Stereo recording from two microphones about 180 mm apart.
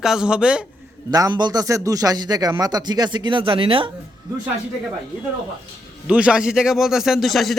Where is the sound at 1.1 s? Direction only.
20° right (ahead or behind).